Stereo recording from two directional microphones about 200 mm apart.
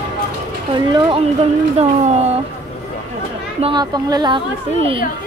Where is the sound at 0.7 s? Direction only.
20° right (ahead or behind).